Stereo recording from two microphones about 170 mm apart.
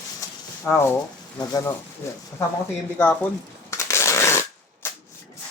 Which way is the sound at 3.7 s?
15° left (ahead or behind).